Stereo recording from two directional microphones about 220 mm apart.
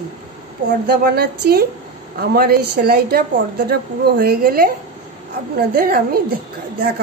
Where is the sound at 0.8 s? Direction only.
45° right (ahead or behind).